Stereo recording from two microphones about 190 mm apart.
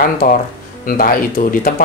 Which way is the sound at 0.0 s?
45° left (ahead or behind).